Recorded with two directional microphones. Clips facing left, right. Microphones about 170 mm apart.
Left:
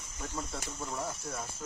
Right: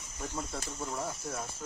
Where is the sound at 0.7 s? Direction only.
Centre (ahead or behind).